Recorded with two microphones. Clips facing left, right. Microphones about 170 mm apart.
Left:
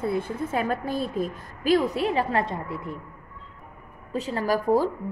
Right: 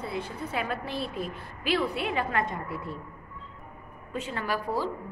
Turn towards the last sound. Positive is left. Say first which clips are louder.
# left 8 dB
turn(degrees=45)  # may be behind; listen again after turning